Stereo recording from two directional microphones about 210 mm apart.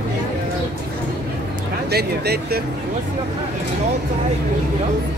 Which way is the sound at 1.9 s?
50° right (ahead or behind).